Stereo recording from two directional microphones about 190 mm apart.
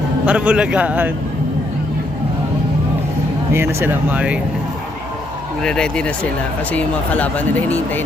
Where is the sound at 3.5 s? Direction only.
10° right (ahead or behind).